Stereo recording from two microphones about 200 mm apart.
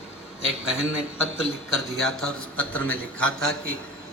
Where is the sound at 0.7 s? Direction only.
5° right (ahead or behind).